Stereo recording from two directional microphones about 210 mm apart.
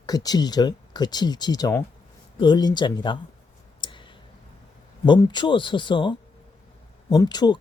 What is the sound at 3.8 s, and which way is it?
Clicking, 25° left (ahead or behind).